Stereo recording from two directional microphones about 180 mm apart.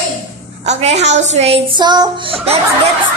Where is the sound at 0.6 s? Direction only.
40° right (ahead or behind).